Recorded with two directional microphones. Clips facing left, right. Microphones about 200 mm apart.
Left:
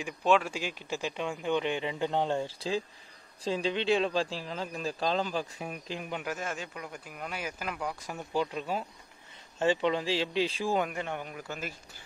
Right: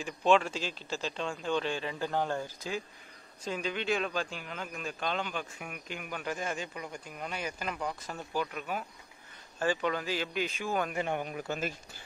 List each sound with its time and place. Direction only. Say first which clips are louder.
0.0 s a man's voice: even; 5° left (ahead or behind); by 6.2 s 25° left (ahead or behind)
6.2 s speech: even; centre (ahead or behind)
8.3 s speech: left 4 dB; 25° left (ahead or behind)
10.9 s a man's voice: right 3 dB; 10° right (ahead or behind)